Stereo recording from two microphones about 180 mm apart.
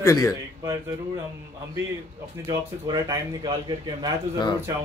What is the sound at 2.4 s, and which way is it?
A man's voice, 20° right (ahead or behind).